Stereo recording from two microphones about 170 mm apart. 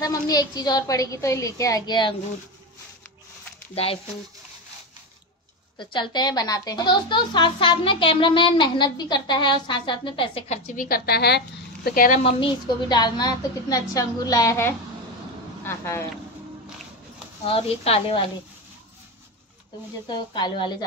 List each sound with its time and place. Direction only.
0.0 s a woman's voice: 20° left (ahead or behind)
3.7 s speech: 35° left (ahead or behind)
5.8 s a woman's voice: 30° left (ahead or behind)
10.8 s a woman's voice: 65° left (ahead or behind)
12.2 s a woman's voice: 30° left (ahead or behind); by 16.1 s 15° left (ahead or behind)
17.5 s speech: 35° left (ahead or behind)
20.1 s a woman's voice: 25° left (ahead or behind)